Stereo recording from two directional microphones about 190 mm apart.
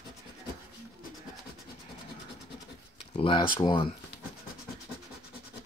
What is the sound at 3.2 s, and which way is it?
Speech, 25° left (ahead or behind).